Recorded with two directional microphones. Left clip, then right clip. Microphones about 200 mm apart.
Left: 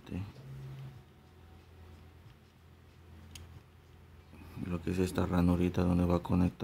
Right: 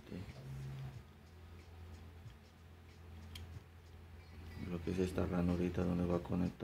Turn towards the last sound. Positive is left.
turn(degrees=35)  # may be behind; listen again after turning